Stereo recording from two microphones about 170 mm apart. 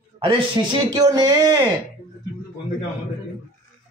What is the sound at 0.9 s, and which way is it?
Speech, 20° right (ahead or behind).